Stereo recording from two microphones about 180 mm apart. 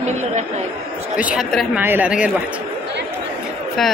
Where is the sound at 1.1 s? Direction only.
5° right (ahead or behind).